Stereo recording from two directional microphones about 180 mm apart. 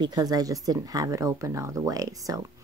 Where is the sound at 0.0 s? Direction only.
20° right (ahead or behind).